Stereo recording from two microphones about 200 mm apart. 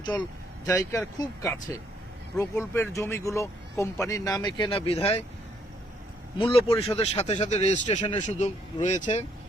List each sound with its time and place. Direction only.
0.7 s speech: 15° left (ahead or behind); by 5.2 s 30° left (ahead or behind)
6.4 s speech: 25° left (ahead or behind)